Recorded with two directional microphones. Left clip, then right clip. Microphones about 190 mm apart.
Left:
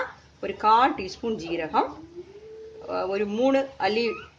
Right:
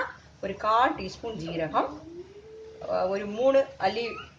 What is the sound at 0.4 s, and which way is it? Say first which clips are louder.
Speech: left 4 dB; 50° left (ahead or behind).